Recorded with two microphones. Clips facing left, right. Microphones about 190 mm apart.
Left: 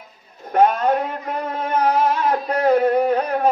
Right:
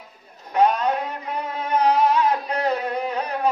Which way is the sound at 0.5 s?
50° left (ahead or behind).